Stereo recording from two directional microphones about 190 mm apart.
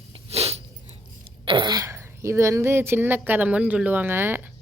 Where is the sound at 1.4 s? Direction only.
25° right (ahead or behind).